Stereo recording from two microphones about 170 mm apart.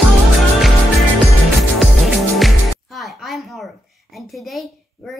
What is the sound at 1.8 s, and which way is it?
A woman's voice, centre (ahead or behind).